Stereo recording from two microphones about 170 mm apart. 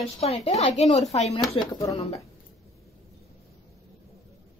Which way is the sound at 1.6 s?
20° left (ahead or behind).